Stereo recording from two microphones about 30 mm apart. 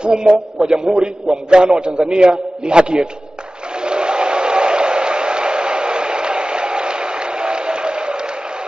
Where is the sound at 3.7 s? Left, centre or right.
Right.